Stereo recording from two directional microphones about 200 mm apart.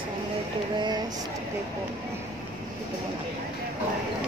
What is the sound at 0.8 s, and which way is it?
Speech, 20° right (ahead or behind).